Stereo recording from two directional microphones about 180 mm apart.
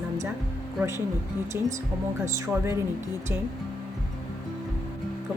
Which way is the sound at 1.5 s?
15° right (ahead or behind).